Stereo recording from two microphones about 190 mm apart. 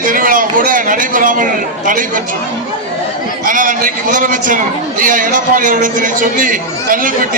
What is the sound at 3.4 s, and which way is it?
A man's voice, 45° right (ahead or behind).